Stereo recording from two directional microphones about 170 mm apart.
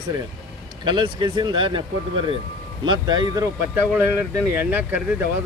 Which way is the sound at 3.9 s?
10° right (ahead or behind).